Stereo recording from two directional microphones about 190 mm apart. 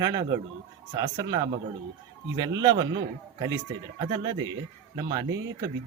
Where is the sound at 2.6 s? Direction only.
20° right (ahead or behind).